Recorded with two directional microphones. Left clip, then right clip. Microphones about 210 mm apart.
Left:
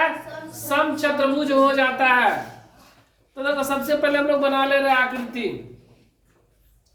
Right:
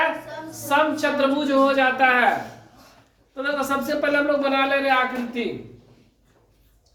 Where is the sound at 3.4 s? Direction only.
15° right (ahead or behind).